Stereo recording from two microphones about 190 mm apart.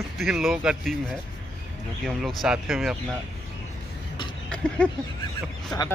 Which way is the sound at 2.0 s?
5° right (ahead or behind).